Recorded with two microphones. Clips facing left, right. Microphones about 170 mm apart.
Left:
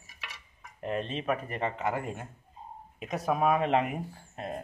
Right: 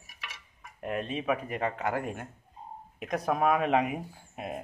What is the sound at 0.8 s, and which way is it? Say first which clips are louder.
Speech: even; 10° right (ahead or behind).